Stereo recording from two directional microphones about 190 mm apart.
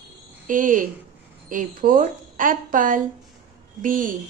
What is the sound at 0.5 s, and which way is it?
A woman's voice, 45° right (ahead or behind).